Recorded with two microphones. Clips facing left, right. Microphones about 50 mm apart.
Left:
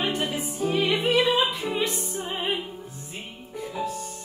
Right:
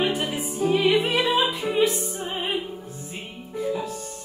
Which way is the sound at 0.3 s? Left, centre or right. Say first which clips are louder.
Right 3 dB; centre.